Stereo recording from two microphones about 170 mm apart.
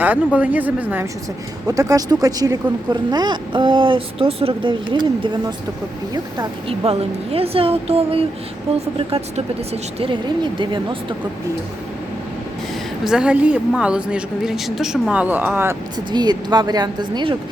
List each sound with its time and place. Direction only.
0.3 s a woman's voice: 10° right (ahead or behind); by 10.9 s 30° right (ahead or behind)
13.1 s a woman's voice: 5° right (ahead or behind)
16.1 s speech: 25° right (ahead or behind)